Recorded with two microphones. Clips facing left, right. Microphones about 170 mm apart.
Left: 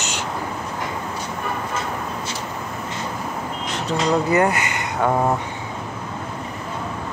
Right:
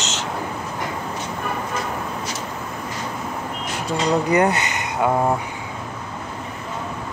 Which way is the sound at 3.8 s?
20° right (ahead or behind).